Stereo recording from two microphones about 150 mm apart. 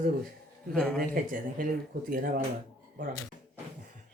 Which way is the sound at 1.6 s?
65° right (ahead or behind).